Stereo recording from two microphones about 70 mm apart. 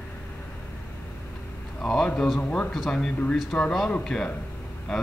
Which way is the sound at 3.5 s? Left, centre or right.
Centre.